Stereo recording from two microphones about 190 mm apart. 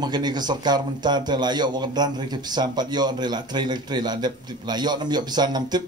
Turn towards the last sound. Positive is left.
turn(degrees=-20)  # may be behind; listen again after turning